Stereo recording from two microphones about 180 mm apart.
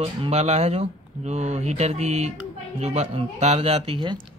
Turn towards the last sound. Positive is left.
turn(degrees=-25)  # may be behind; listen again after turning